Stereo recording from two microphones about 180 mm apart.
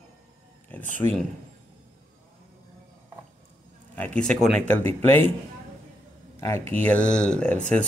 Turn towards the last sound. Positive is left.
turn(degrees=5)  # may be behind; listen again after turning